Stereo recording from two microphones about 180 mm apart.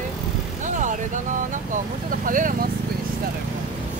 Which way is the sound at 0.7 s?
45° right (ahead or behind).